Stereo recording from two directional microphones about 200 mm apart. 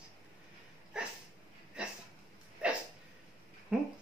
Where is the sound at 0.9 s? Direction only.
5° right (ahead or behind).